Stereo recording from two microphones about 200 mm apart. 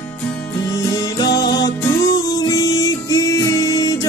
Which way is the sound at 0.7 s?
20° left (ahead or behind).